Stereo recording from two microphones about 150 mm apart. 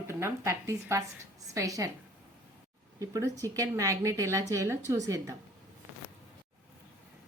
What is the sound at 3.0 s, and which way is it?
A woman's voice, 20° right (ahead or behind).